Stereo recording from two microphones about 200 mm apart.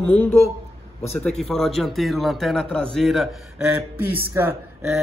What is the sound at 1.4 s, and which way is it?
A man's voice, centre (ahead or behind).